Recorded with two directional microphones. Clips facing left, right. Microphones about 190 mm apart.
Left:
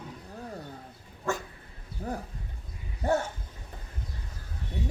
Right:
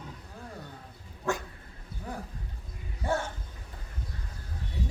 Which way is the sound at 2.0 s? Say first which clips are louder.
Left 5 dB; 35° left (ahead or behind).